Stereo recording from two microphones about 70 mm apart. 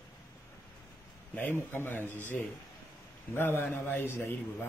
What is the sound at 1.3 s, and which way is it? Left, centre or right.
A man's voice, left.